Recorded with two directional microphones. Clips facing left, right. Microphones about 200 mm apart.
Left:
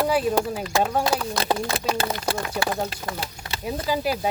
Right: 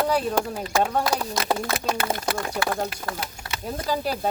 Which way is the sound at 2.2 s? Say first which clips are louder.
Even; 25° left (ahead or behind).